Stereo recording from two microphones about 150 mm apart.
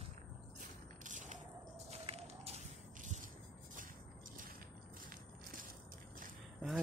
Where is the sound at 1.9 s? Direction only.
45° right (ahead or behind).